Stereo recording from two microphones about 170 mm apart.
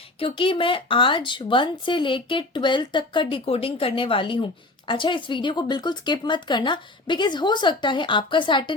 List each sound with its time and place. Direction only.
0.2 s speech: 30° left (ahead or behind)